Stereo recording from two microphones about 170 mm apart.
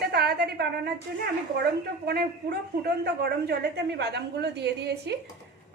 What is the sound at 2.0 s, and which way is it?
A woman's voice, 70° right (ahead or behind).